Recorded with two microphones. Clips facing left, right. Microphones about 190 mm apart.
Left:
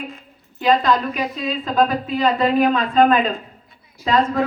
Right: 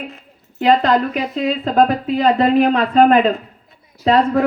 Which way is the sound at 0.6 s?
60° right (ahead or behind).